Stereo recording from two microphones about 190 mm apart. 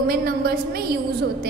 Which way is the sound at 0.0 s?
55° right (ahead or behind).